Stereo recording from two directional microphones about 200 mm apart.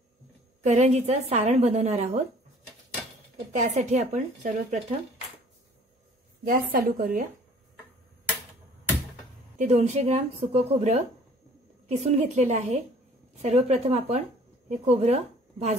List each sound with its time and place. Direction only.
0.6 s a woman's voice: 35° right (ahead or behind)
3.5 s a woman's voice: 35° right (ahead or behind)
6.4 s a woman's voice: 45° right (ahead or behind)
9.6 s a woman's voice: 35° right (ahead or behind)